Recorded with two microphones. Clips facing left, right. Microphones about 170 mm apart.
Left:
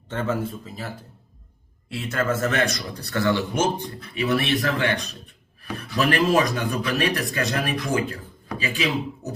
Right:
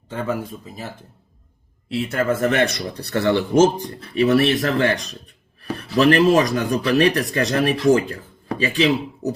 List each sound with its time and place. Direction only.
0.1 s speech: 10° right (ahead or behind)
1.9 s speech: 30° right (ahead or behind)
2.3 s speech: 15° right (ahead or behind)
2.7 s speech: 30° right (ahead or behind)